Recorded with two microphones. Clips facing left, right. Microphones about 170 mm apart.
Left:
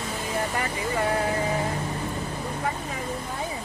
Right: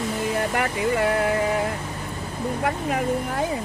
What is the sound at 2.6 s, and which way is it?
Vehicle, 65° right (ahead or behind).